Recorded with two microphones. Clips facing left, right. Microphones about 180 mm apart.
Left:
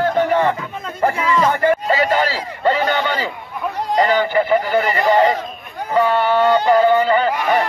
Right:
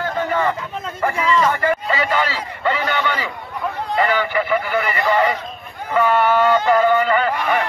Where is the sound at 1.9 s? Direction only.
40° left (ahead or behind).